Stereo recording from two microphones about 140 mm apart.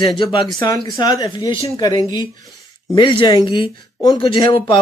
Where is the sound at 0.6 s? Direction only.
30° left (ahead or behind).